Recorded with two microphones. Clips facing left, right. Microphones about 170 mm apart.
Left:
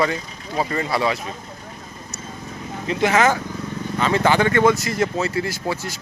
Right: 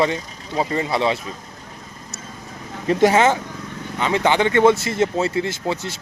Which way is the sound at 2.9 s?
45° right (ahead or behind).